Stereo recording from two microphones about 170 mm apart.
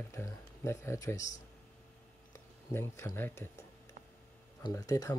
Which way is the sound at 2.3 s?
15° left (ahead or behind).